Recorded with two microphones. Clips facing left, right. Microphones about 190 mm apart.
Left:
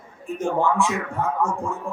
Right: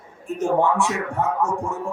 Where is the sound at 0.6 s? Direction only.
75° right (ahead or behind).